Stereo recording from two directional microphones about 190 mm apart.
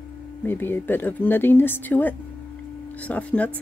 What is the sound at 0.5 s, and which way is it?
Speech, 10° left (ahead or behind).